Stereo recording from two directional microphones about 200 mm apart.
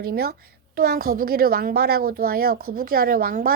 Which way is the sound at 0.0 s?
50° right (ahead or behind).